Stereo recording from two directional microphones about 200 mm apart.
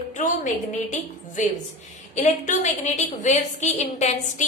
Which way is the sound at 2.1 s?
40° left (ahead or behind).